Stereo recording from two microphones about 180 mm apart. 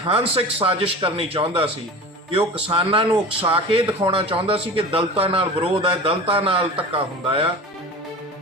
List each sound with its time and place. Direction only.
0.1 s speech: 30° right (ahead or behind)